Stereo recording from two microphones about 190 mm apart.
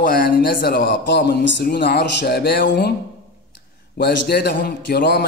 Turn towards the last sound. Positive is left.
turn(degrees=60)  # may be behind; listen again after turning